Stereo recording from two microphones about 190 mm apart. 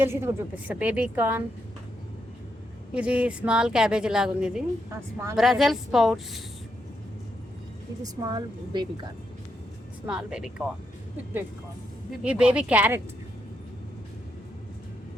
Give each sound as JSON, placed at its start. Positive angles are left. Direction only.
{"t": 0.0, "sound": "a woman's voice", "side_deg": -10}
{"t": 2.9, "sound": "a woman's voice", "side_deg": -5}
{"t": 8.3, "sound": "speech", "side_deg": -20}
{"t": 10.1, "sound": "a woman's voice", "side_deg": -5}
{"t": 12.2, "sound": "a woman's voice", "side_deg": -5}